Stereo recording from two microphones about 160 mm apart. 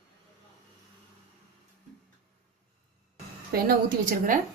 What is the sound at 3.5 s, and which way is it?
Speech, 60° right (ahead or behind).